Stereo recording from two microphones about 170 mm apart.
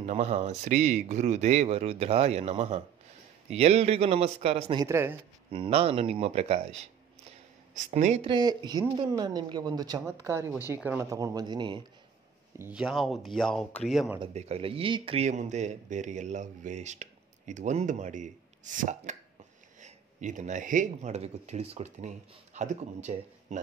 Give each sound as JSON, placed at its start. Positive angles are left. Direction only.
{"t": 0.0, "sound": "speech", "side_deg": -40}
{"t": 4.7, "sound": "speech", "side_deg": -15}
{"t": 5.5, "sound": "speech", "side_deg": -35}
{"t": 8.3, "sound": "a woman's voice", "side_deg": -25}
{"t": 12.5, "sound": "speech", "side_deg": -10}
{"t": 14.2, "sound": "speech", "side_deg": -40}